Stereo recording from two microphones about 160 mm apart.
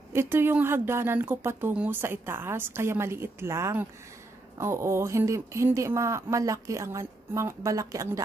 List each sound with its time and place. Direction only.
0.1 s speech: 15° right (ahead or behind)